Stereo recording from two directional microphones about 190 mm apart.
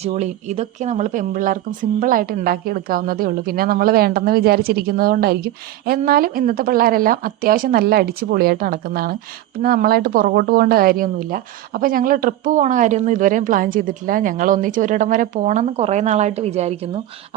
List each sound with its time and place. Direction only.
0.0 s a woman's voice: 35° right (ahead or behind)